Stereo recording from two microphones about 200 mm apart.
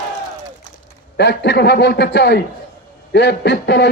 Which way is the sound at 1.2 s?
55° left (ahead or behind).